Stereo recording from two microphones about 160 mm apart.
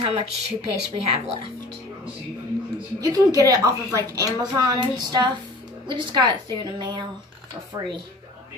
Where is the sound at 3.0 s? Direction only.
20° right (ahead or behind).